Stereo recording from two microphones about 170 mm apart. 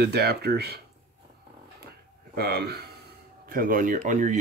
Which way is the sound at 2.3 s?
65° right (ahead or behind).